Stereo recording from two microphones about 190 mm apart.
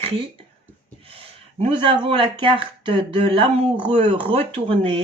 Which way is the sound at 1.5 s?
30° right (ahead or behind).